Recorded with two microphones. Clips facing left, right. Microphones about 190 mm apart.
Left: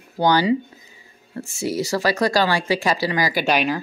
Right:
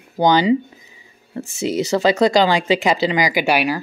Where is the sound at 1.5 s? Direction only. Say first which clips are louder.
Right 4 dB; 20° right (ahead or behind).